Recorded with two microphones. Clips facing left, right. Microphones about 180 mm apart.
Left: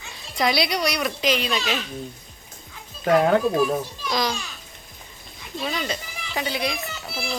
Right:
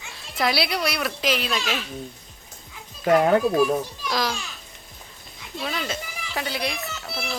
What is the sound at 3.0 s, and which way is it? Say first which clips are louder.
Speech: even; 5° right (ahead or behind).